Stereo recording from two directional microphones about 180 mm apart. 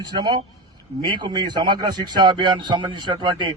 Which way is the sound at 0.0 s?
25° right (ahead or behind).